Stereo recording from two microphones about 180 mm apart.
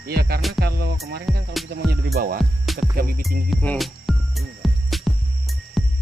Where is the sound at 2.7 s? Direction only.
Centre (ahead or behind).